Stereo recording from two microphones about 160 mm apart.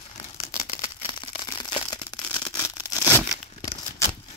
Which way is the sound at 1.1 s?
25° left (ahead or behind).